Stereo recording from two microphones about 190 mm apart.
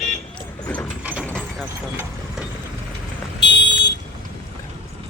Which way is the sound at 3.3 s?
70° left (ahead or behind).